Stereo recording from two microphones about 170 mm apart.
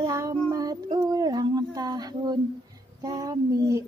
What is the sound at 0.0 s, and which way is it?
Child singing, 20° right (ahead or behind).